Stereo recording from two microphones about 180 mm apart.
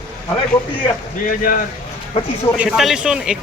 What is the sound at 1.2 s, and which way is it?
Speech, 50° left (ahead or behind).